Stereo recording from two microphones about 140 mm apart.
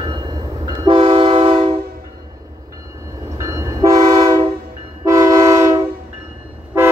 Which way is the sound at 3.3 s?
20° right (ahead or behind).